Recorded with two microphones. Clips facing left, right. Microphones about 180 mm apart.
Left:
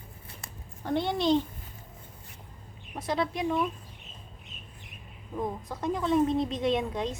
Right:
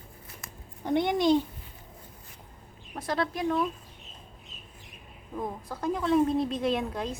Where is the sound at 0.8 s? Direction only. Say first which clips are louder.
Right 2 dB; 15° right (ahead or behind).